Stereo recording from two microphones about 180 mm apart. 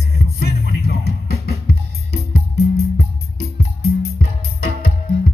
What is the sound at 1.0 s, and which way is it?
Music, 60° left (ahead or behind).